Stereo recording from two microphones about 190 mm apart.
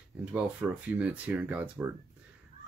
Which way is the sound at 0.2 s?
5° right (ahead or behind).